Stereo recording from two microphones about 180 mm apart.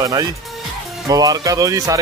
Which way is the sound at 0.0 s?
20° right (ahead or behind).